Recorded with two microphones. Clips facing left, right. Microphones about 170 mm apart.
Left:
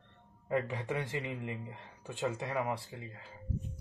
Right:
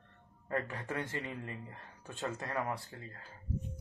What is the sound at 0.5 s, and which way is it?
Speech, 15° left (ahead or behind).